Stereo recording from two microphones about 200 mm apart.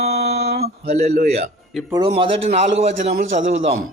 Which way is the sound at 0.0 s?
55° right (ahead or behind).